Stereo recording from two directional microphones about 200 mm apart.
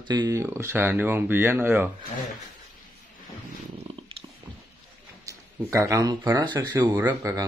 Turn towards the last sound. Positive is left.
turn(degrees=-15)  # may be behind; listen again after turning